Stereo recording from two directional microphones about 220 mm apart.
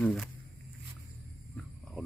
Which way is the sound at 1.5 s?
Centre (ahead or behind).